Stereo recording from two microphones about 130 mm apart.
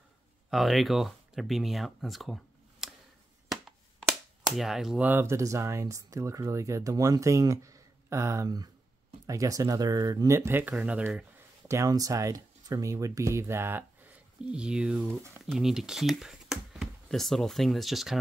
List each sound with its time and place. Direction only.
0.5 s speech: centre (ahead or behind)
4.5 s speech: 5° right (ahead or behind)
10.7 s speech: 5° right (ahead or behind)
11.6 s speech: 25° right (ahead or behind); by 18.2 s centre (ahead or behind)